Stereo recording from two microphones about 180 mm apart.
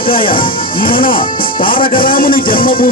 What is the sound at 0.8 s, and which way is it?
Music, 50° left (ahead or behind).